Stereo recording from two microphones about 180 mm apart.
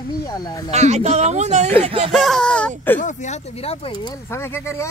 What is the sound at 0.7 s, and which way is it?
Speech, 40° right (ahead or behind).